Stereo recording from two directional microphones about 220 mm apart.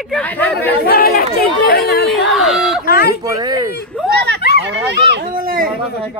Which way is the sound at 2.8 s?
45° left (ahead or behind).